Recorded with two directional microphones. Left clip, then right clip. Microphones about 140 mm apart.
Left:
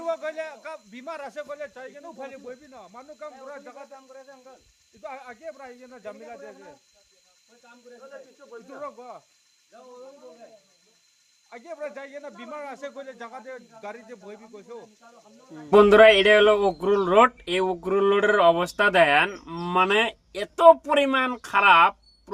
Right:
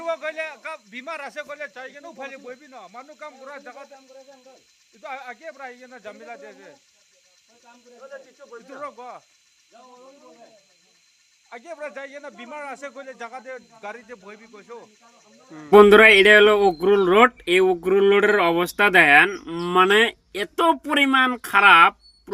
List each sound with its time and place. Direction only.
0.0 s speech: 5° left (ahead or behind); by 3.8 s 15° right (ahead or behind)
5.0 s speech: 15° right (ahead or behind)
8.0 s speech: 35° right (ahead or behind)
8.6 s speech: 15° right (ahead or behind)
11.4 s speech: centre (ahead or behind)
15.7 s speech: 10° right (ahead or behind)